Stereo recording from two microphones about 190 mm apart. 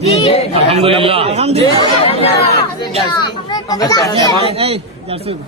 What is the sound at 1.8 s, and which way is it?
A child's voice, 30° left (ahead or behind).